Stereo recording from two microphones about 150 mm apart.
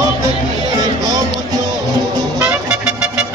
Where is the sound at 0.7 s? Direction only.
25° right (ahead or behind).